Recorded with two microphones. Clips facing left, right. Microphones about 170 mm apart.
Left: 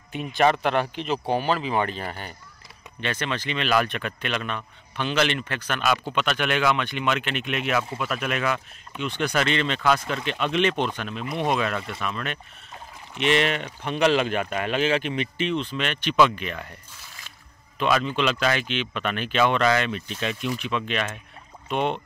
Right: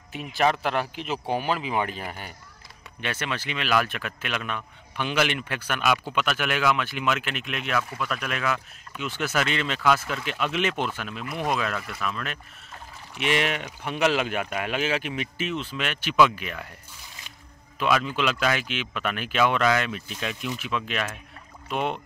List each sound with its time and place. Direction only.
0.1 s speech: centre (ahead or behind)
11.2 s speech: 25° left (ahead or behind)
11.5 s speech: centre (ahead or behind)
17.7 s speech: 5° right (ahead or behind)